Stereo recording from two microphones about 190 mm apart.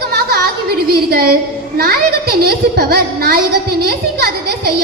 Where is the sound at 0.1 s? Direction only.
55° right (ahead or behind).